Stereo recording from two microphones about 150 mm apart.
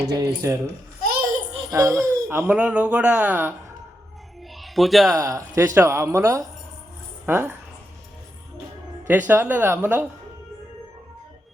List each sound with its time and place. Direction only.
0.0 s speech: 25° right (ahead or behind)
1.0 s a sound: 75° right (ahead or behind)
1.7 s speech: 20° right (ahead or behind)
4.5 s a sound: centre (ahead or behind)
5.1 s speech: 20° right (ahead or behind)
9.0 s speech: 10° right (ahead or behind)